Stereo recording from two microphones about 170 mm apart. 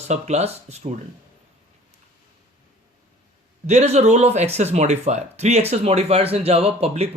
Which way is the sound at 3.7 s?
40° right (ahead or behind).